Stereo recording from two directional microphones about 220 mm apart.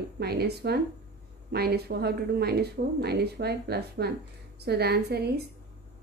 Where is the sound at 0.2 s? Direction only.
45° right (ahead or behind).